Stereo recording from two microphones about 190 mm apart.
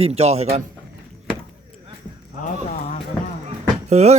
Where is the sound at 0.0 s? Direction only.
35° right (ahead or behind).